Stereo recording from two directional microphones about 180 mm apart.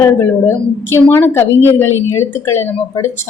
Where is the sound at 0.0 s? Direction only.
15° left (ahead or behind).